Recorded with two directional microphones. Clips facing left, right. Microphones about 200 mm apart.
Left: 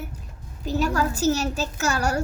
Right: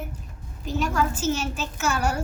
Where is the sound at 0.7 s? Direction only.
40° left (ahead or behind).